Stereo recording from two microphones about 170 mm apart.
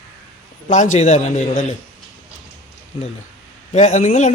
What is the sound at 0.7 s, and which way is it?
Speech, 45° left (ahead or behind).